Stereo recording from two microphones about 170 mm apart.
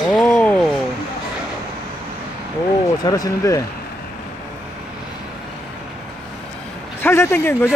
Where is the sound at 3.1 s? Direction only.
20° left (ahead or behind).